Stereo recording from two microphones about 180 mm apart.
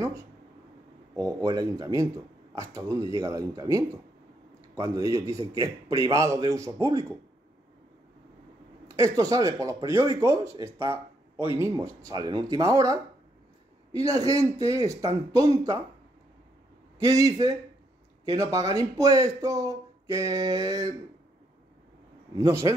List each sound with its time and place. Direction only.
1.1 s speech: 20° right (ahead or behind)
8.8 s speech: 20° right (ahead or behind)
17.0 s speech: 20° right (ahead or behind)
22.3 s speech: 20° right (ahead or behind)